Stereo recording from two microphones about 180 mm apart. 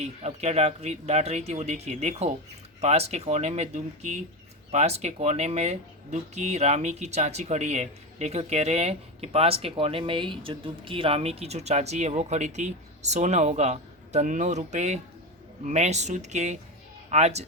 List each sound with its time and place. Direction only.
0.0 s speech: 40° right (ahead or behind)